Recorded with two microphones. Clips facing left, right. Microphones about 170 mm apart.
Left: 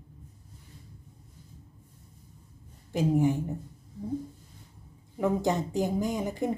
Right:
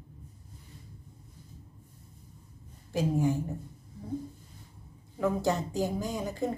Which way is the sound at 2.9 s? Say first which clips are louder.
Left 3 dB; 20° left (ahead or behind).